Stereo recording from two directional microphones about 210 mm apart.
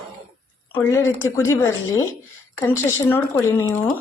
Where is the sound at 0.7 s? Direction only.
10° left (ahead or behind).